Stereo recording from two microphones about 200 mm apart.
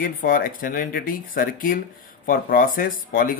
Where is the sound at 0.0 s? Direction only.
45° left (ahead or behind).